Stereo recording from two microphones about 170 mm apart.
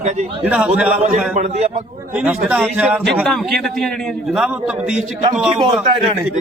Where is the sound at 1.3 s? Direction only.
40° right (ahead or behind).